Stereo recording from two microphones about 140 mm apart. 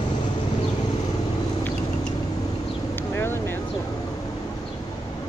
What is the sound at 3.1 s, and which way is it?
Vehicle, 15° left (ahead or behind).